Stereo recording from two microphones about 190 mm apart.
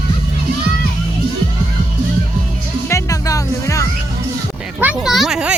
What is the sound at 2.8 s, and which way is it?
Music, 15° left (ahead or behind).